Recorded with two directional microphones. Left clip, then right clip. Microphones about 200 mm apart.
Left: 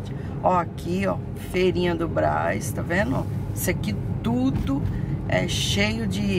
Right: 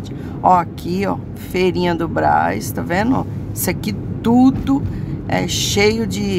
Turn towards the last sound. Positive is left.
turn(degrees=-35)  # may be behind; listen again after turning